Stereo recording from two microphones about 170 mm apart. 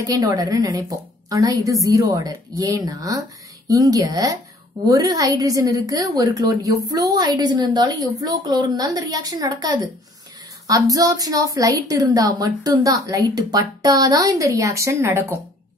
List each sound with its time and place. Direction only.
0.0 s a woman's voice: 20° right (ahead or behind)